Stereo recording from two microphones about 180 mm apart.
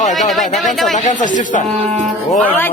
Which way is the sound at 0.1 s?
Centre (ahead or behind).